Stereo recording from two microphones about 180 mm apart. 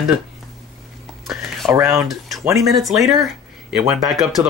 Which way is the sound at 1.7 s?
15° right (ahead or behind).